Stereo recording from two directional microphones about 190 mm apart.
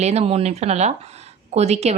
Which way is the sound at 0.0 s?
35° right (ahead or behind).